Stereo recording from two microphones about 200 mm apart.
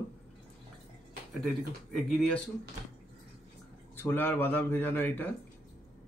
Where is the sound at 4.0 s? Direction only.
10° left (ahead or behind).